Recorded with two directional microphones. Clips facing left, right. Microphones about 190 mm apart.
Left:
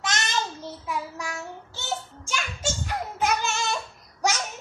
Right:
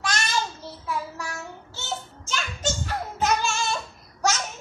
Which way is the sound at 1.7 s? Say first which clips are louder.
Left 1 dB; 15° left (ahead or behind).